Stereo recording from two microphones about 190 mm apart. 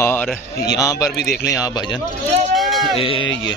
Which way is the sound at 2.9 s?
25° left (ahead or behind).